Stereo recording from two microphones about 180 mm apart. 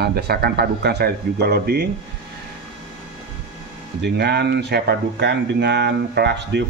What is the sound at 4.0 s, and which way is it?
Speech, 65° right (ahead or behind).